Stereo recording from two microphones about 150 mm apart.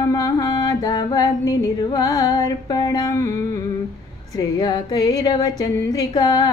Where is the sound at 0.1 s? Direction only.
25° left (ahead or behind).